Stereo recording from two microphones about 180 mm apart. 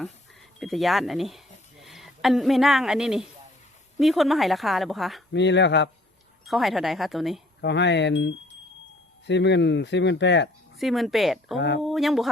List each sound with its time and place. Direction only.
0.6 s a woman's voice: centre (ahead or behind)
5.3 s speech: 75° left (ahead or behind)
6.4 s a woman's voice: centre (ahead or behind)
7.6 s speech: 75° left (ahead or behind)
10.8 s a woman's voice: centre (ahead or behind)